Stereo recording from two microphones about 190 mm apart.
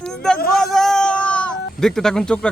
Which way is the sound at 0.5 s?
Centre (ahead or behind).